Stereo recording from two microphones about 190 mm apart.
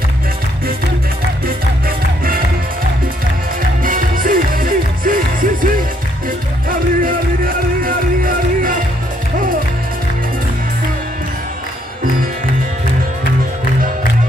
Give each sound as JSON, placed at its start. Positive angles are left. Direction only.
{"t": 1.9, "sound": "music", "side_deg": -50}
{"t": 3.8, "sound": "music", "side_deg": -45}